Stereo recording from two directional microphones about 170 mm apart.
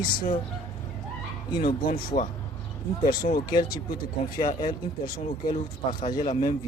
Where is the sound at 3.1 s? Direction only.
60° left (ahead or behind).